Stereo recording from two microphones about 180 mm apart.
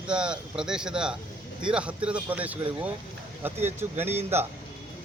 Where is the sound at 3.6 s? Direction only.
10° right (ahead or behind).